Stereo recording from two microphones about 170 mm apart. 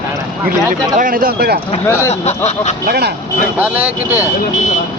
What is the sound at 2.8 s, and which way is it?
Speech, 70° right (ahead or behind).